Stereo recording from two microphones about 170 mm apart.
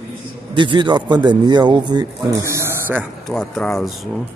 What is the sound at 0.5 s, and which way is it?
A man's voice, 30° right (ahead or behind).